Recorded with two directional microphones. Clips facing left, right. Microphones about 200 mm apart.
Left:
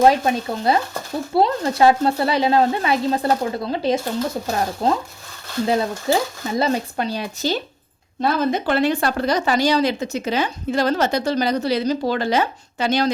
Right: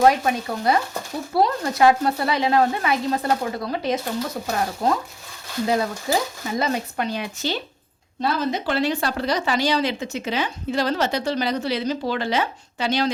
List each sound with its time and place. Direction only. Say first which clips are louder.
0.0 s speech: left 2 dB; 30° left (ahead or behind)
8.2 s speech: left 4 dB; 50° left (ahead or behind)